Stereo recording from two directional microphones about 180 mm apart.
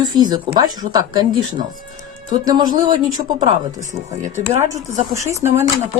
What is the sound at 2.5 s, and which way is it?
Speech, 20° right (ahead or behind).